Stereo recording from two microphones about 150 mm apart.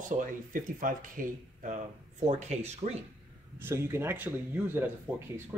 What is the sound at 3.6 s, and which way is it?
Speech, 15° right (ahead or behind).